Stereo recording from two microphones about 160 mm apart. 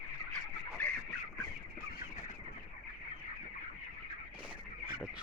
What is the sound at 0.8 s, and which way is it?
Chicken, 10° left (ahead or behind).